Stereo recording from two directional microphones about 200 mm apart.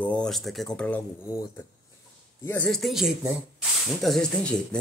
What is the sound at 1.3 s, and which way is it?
Speech, 15° left (ahead or behind).